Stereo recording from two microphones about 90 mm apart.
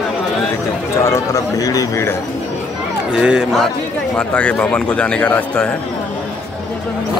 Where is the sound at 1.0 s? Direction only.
35° left (ahead or behind).